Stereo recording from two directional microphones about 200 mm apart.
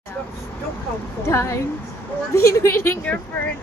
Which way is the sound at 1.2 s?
15° left (ahead or behind).